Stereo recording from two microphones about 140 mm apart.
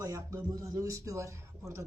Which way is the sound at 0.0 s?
20° right (ahead or behind).